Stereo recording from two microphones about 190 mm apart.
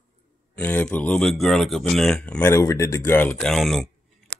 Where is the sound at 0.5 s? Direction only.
10° left (ahead or behind).